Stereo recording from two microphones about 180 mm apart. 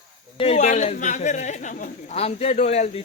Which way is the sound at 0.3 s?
35° left (ahead or behind).